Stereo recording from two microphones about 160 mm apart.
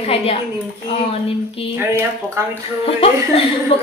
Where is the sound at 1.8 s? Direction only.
15° right (ahead or behind).